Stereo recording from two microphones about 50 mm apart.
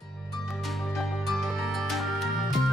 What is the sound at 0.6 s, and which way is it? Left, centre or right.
Music, centre.